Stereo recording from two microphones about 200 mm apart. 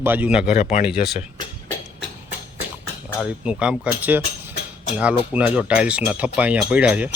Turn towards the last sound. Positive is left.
turn(degrees=-5)  # may be behind; listen again after turning